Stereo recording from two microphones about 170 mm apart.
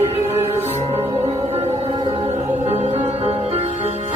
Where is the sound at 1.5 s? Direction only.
40° right (ahead or behind).